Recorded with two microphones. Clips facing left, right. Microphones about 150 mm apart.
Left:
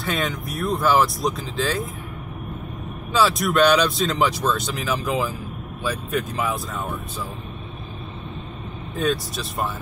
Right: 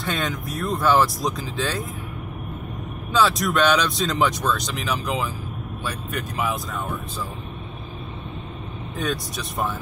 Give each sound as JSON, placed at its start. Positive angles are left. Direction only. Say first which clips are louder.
{"t": 0.0, "sound": "speech", "louder": "left 1 dB", "side_deg": 0}
{"t": 3.2, "sound": "speech", "louder": "left 2 dB", "side_deg": 0}
{"t": 8.9, "sound": "speech", "louder": "left 4 dB", "side_deg": 0}